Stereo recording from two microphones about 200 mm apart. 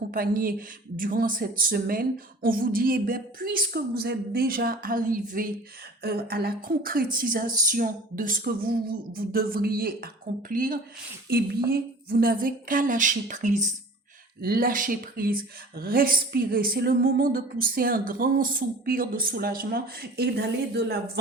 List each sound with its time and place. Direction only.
0.1 s a woman's voice: 45° right (ahead or behind)